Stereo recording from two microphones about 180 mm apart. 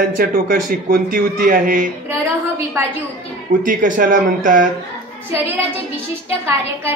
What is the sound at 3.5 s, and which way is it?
A man's voice, 45° right (ahead or behind).